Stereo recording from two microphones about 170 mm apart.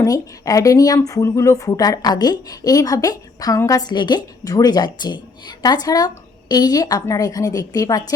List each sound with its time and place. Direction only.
0.0 s speech: 20° left (ahead or behind)